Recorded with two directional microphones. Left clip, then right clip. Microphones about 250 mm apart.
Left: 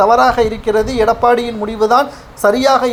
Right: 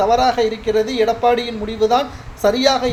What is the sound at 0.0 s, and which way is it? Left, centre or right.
Speech, centre.